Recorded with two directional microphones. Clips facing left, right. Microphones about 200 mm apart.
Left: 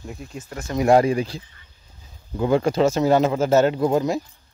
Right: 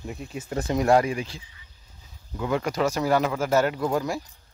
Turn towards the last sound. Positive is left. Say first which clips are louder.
# left 6 dB
turn(degrees=20)  # may be behind; listen again after turning